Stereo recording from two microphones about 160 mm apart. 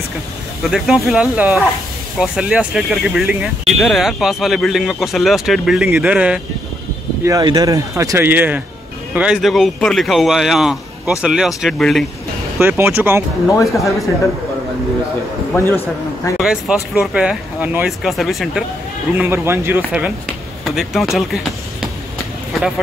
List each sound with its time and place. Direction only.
0.7 s speech: centre (ahead or behind)
7.2 s speech: 20° right (ahead or behind); by 12.1 s centre (ahead or behind)
12.5 s speech: 15° right (ahead or behind)
13.5 s speech: 20° left (ahead or behind)
13.7 s speech: centre (ahead or behind)
16.3 s speech: 5° right (ahead or behind)
19.1 s speech: 15° right (ahead or behind)